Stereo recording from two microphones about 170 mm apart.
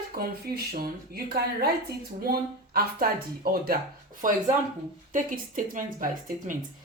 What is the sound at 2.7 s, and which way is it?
A woman's voice, 60° right (ahead or behind).